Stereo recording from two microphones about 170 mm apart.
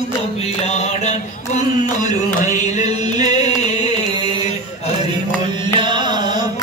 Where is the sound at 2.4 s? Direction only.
45° left (ahead or behind).